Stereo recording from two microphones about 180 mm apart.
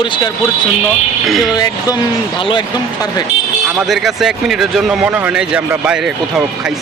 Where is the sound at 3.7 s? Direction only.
Centre (ahead or behind).